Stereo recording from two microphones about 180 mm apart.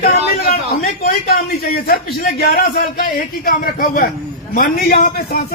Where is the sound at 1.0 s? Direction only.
55° left (ahead or behind).